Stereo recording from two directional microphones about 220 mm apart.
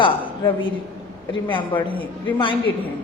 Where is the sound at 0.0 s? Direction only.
20° left (ahead or behind).